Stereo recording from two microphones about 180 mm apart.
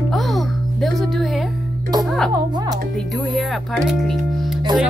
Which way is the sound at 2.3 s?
20° right (ahead or behind).